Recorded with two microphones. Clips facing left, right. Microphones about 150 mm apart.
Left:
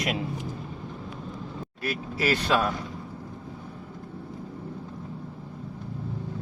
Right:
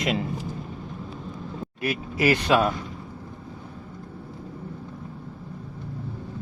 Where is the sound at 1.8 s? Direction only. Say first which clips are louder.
Right 4 dB; 15° right (ahead or behind).